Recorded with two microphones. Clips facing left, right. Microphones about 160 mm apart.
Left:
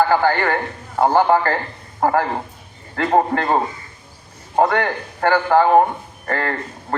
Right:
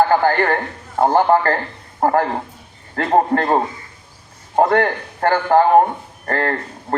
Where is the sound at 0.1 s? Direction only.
45° right (ahead or behind).